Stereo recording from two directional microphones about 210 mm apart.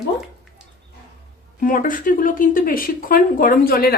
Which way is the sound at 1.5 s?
40° left (ahead or behind).